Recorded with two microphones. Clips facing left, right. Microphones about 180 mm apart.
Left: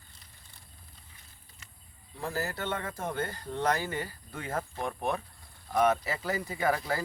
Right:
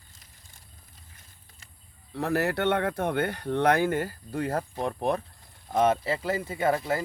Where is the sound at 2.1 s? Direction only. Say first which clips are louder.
Right 8 dB; 70° right (ahead or behind).